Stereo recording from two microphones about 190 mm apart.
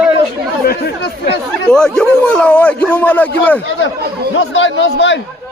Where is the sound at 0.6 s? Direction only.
55° left (ahead or behind).